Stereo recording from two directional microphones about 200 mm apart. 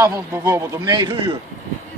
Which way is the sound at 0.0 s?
15° right (ahead or behind).